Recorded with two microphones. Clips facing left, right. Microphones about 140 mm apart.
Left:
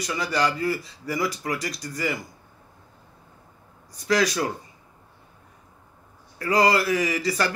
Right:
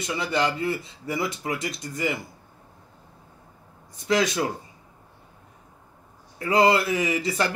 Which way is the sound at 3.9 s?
25° right (ahead or behind).